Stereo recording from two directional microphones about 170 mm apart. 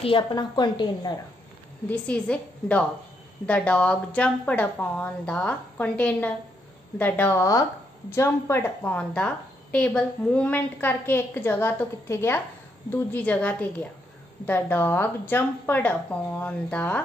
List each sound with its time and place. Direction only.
0.0 s a woman's voice: 30° left (ahead or behind)
1.9 s a woman's voice: 5° left (ahead or behind)